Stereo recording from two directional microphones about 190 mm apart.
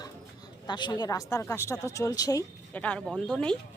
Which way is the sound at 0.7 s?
25° left (ahead or behind).